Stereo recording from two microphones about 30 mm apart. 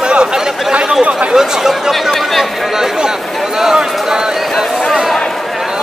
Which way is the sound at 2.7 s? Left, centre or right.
Centre.